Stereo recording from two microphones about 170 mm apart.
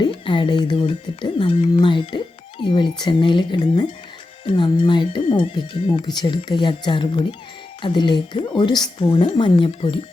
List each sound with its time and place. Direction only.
0.0 s speech: 30° left (ahead or behind)